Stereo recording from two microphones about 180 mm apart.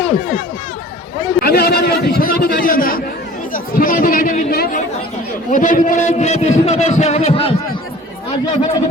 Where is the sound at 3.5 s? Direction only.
50° left (ahead or behind).